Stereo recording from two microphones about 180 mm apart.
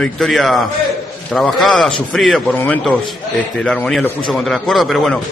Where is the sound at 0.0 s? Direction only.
Centre (ahead or behind).